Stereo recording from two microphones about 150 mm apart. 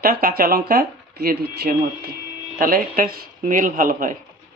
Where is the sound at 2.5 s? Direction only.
70° right (ahead or behind).